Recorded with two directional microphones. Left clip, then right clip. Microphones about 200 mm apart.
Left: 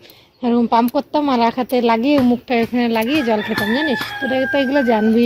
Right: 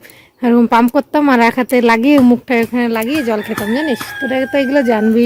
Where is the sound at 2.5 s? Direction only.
10° right (ahead or behind).